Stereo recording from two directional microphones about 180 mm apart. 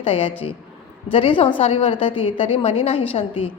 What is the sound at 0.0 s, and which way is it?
A woman's voice, 30° left (ahead or behind).